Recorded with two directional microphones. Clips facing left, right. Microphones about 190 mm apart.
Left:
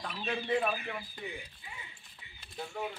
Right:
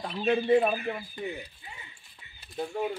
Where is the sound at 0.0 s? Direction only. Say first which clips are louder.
Right 10 dB; 30° right (ahead or behind).